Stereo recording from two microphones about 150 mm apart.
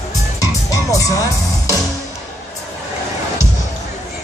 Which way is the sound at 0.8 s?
20° left (ahead or behind).